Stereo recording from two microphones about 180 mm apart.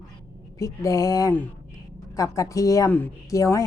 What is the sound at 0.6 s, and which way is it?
Speech, 20° left (ahead or behind).